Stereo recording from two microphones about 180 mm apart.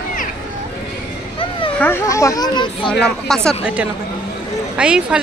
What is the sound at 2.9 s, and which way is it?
Speech, 5° left (ahead or behind).